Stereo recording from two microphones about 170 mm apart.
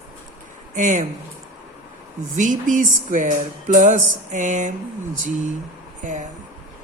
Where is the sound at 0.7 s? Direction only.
45° right (ahead or behind).